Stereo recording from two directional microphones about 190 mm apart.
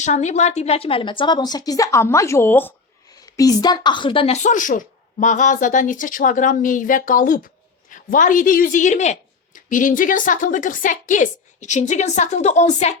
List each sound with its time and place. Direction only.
0.0 s a woman's voice: 35° left (ahead or behind)
4.4 s speech: 45° left (ahead or behind)